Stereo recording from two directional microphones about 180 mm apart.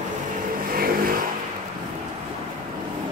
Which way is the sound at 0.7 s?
55° right (ahead or behind).